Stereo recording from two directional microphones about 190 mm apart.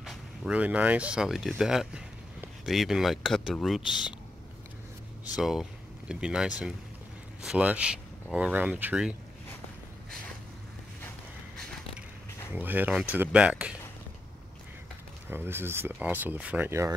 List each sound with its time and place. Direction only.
0.0 s speech: 5° right (ahead or behind)
5.3 s speech: centre (ahead or behind)
11.0 s walk: 5° left (ahead or behind)
12.5 s speech: 10° right (ahead or behind)
15.2 s speech: 10° right (ahead or behind)